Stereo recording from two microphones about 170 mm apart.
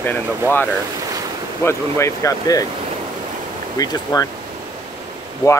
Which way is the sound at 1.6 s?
15° left (ahead or behind).